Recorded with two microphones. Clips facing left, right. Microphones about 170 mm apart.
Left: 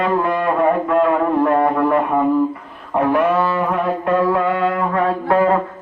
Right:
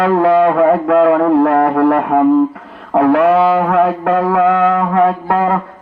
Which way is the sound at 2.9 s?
85° right.